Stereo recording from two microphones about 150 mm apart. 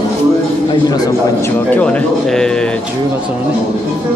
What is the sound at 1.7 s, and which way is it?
Bird, 10° left (ahead or behind).